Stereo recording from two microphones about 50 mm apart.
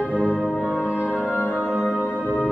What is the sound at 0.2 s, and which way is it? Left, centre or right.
Music, centre.